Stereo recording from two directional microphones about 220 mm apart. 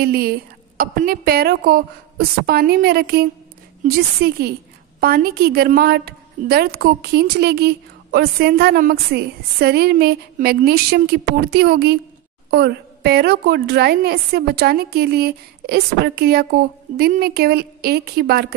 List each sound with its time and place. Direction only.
0.0 s a woman's voice: 45° right (ahead or behind)